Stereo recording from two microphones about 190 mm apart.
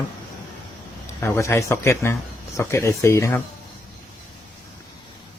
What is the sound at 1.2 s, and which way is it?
Speech, 15° left (ahead or behind).